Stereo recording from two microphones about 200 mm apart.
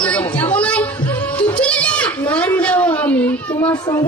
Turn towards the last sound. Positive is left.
turn(degrees=20)  # may be behind; listen again after turning